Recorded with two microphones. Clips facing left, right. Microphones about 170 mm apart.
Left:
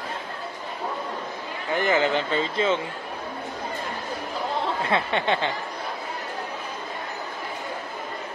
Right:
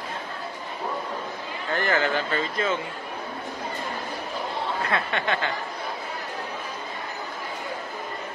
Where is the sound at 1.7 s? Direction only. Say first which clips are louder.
Left 2 dB; 15° left (ahead or behind).